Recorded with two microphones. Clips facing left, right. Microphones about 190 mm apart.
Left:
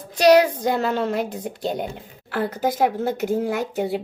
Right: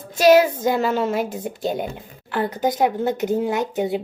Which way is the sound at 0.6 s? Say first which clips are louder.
Right 2 dB; 5° right (ahead or behind).